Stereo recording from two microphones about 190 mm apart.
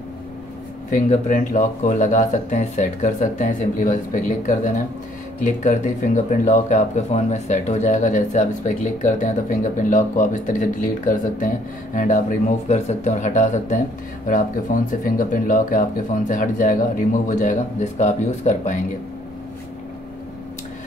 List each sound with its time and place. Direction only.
0.8 s speech: 40° left (ahead or behind)